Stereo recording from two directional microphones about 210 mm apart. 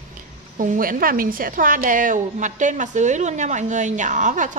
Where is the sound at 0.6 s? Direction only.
40° right (ahead or behind).